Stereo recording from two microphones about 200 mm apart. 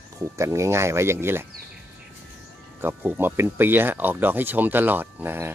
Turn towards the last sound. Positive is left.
turn(degrees=-10)  # may be behind; listen again after turning